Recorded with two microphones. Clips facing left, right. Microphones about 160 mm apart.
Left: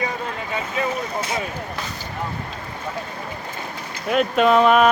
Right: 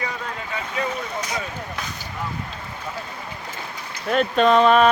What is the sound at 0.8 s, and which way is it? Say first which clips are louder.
Speech: left 2 dB; 25° left (ahead or behind).